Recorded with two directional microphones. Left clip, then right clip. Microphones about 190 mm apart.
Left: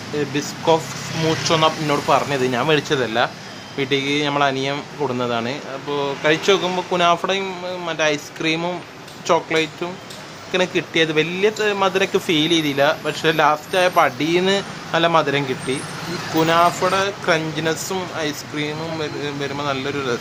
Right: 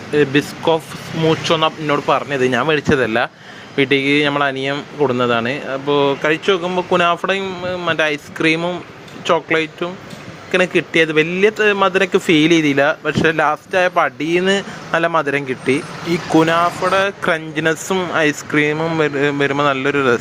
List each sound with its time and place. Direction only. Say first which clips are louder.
0.2 s speech: right 9 dB; 25° right (ahead or behind)